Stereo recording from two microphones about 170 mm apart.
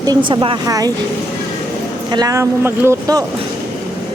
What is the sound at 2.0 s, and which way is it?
Speech, 25° right (ahead or behind).